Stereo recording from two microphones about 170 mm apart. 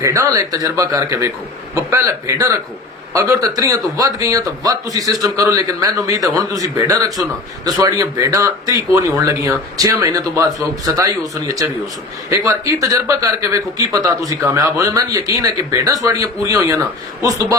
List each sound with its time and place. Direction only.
0.0 s a man's voice: 20° right (ahead or behind)